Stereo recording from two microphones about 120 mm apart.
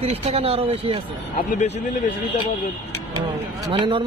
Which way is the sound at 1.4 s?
65° left (ahead or behind).